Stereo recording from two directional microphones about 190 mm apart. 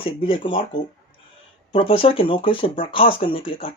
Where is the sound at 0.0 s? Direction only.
30° left (ahead or behind).